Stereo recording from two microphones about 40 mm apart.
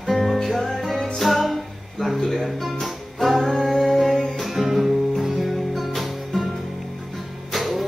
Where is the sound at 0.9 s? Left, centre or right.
Centre.